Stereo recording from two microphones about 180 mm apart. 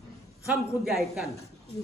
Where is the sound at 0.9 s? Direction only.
Centre (ahead or behind).